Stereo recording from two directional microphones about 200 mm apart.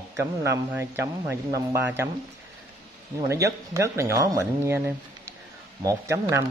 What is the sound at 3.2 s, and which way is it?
Speech, 15° right (ahead or behind).